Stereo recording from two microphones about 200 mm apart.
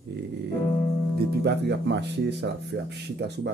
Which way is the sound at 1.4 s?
55° right (ahead or behind).